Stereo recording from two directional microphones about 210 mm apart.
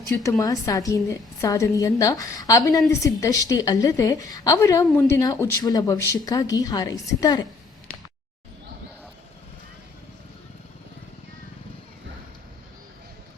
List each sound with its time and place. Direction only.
0.2 s a woman's voice: 15° left (ahead or behind)